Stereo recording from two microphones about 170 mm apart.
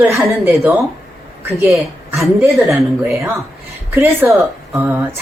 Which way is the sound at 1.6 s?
Centre (ahead or behind).